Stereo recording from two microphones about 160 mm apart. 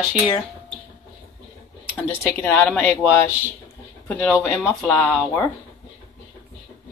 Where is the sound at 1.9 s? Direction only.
15° left (ahead or behind).